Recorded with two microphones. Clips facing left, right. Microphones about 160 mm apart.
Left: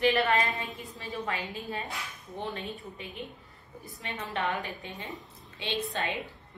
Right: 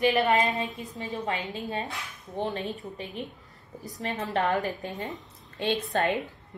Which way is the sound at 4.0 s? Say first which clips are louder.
Right 6 dB; 40° right (ahead or behind).